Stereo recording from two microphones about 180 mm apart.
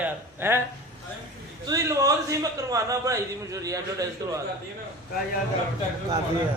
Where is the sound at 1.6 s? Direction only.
20° right (ahead or behind).